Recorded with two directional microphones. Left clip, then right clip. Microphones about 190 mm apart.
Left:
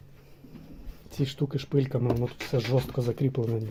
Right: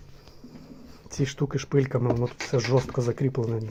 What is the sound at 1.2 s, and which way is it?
Speech, 5° right (ahead or behind).